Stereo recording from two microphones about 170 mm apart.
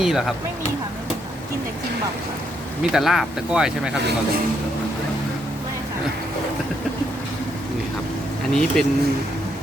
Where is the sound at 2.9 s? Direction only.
Centre (ahead or behind).